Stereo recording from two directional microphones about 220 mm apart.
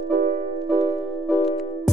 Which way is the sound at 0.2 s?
35° right (ahead or behind).